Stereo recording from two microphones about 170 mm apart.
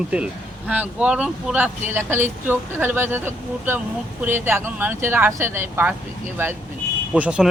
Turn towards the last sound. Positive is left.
turn(degrees=-5)  # may be behind; listen again after turning